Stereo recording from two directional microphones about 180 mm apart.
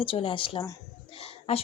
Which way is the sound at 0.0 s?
30° left (ahead or behind).